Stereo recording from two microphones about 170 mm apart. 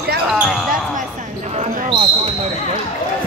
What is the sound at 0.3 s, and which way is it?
Basketball bounce, centre (ahead or behind).